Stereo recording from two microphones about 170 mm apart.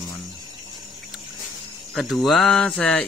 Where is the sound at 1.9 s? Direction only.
Centre (ahead or behind).